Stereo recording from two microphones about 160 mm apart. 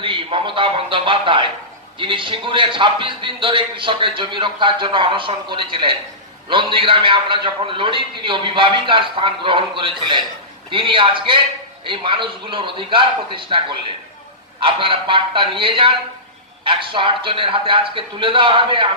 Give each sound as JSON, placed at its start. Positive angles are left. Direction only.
{"t": 0.0, "sound": "a man's voice", "side_deg": -30}